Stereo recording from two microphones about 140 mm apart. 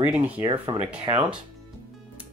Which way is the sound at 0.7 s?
35° right (ahead or behind).